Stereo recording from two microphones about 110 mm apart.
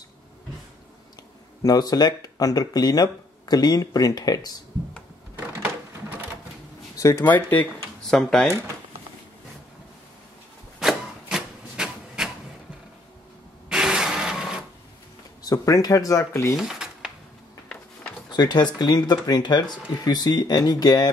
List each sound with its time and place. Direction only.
1.6 s speech: 35° left (ahead or behind)
7.0 s speech: 25° left (ahead or behind)
7.2 s speech: 15° left (ahead or behind)
8.1 s speech: 5° left (ahead or behind)
10.8 s chopping: 5° right (ahead or behind)
13.7 s printer: 5° right (ahead or behind)
15.4 s speech: 35° left (ahead or behind)
16.5 s a sound: 5° right (ahead or behind)
18.3 s speech: 40° left (ahead or behind)